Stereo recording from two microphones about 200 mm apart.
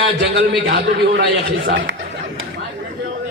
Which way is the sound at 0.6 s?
60° right (ahead or behind).